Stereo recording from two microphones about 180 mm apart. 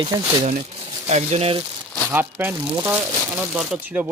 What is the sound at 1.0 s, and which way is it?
Speech, 35° right (ahead or behind).